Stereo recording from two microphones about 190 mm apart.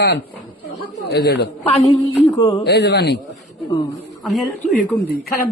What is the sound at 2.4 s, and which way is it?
Speech, 20° left (ahead or behind).